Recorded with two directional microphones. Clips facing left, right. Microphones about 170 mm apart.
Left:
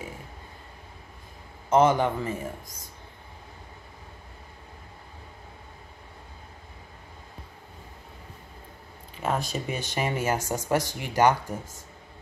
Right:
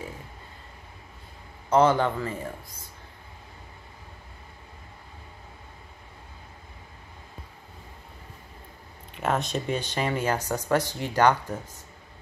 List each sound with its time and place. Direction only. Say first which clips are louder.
1.7 s speech: even; 20° left (ahead or behind)
9.1 s speech: right 2 dB; centre (ahead or behind)